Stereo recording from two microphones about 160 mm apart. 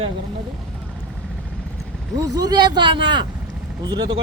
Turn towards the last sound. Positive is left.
turn(degrees=-25)  # may be behind; listen again after turning